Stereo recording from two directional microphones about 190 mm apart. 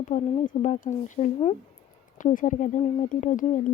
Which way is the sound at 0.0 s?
40° left (ahead or behind).